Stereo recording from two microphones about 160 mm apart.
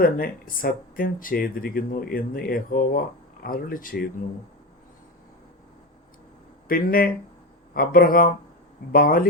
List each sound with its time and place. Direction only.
0.0 s speech: 65° left (ahead or behind)
6.7 s speech: 65° left (ahead or behind)